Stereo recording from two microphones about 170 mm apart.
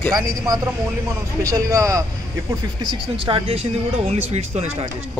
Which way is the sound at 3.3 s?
30° right (ahead or behind).